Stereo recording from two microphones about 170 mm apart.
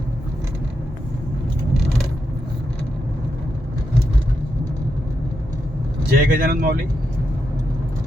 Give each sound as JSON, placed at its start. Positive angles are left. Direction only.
{"t": 6.1, "sound": "speech", "side_deg": -60}